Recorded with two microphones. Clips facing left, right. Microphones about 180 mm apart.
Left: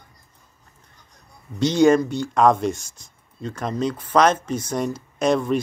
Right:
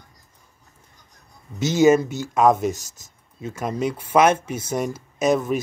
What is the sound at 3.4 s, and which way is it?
Speech, 5° right (ahead or behind).